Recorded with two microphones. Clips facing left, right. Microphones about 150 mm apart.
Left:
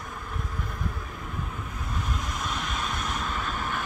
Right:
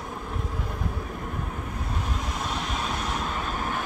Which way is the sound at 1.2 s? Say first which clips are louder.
Right 3 dB; 50° right (ahead or behind).